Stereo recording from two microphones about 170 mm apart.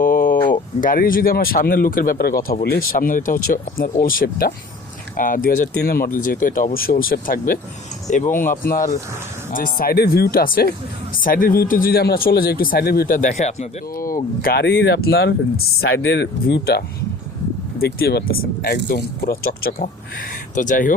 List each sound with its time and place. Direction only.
0.0 s a sound: 50° left (ahead or behind)
0.5 s speech: 50° left (ahead or behind)
13.9 s speech: 55° left (ahead or behind)
14.4 s speech: 75° left (ahead or behind); by 20.9 s 50° left (ahead or behind)